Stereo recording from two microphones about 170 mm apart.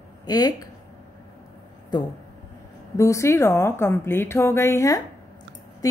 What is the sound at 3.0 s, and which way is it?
A woman's voice, 15° left (ahead or behind).